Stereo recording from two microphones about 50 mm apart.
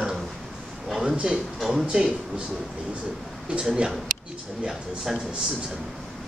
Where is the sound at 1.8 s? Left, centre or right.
Centre.